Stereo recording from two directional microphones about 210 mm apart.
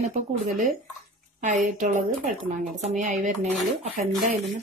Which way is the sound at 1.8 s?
35° right (ahead or behind).